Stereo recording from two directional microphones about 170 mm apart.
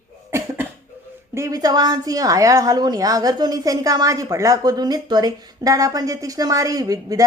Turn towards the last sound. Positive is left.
turn(degrees=-20)  # may be behind; listen again after turning